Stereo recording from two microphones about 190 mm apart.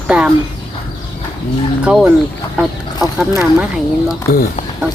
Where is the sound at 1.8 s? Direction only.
Centre (ahead or behind).